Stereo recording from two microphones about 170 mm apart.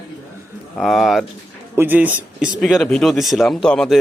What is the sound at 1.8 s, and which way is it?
Speech, 10° right (ahead or behind).